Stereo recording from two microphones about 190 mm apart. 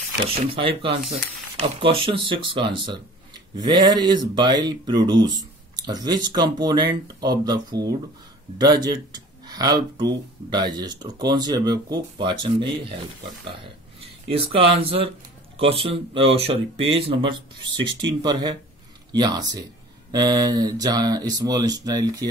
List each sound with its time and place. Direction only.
0.3 s speech: 30° right (ahead or behind)
14.2 s speech: 30° right (ahead or behind)